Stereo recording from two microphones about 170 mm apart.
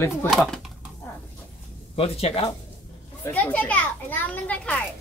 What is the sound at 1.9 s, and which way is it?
Speech, 35° left (ahead or behind).